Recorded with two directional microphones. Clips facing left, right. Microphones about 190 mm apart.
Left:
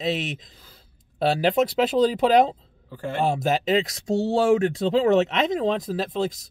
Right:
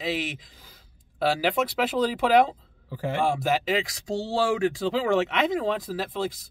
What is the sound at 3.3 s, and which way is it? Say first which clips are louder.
Speech: left 4 dB; 25° left (ahead or behind).